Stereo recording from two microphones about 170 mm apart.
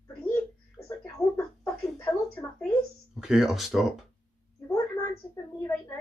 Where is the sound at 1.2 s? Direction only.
15° left (ahead or behind).